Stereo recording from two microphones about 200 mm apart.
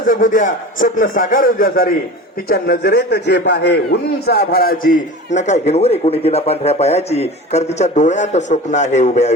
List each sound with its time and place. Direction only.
0.1 s a man's voice: 40° left (ahead or behind)